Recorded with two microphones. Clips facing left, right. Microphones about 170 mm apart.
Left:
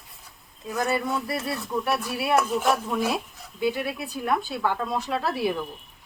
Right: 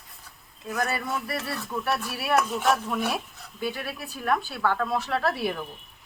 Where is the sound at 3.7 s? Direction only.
20° left (ahead or behind).